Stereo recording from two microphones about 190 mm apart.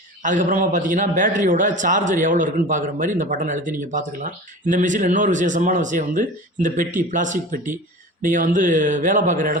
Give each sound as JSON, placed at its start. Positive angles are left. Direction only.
{"t": 0.2, "sound": "a man's voice", "side_deg": -40}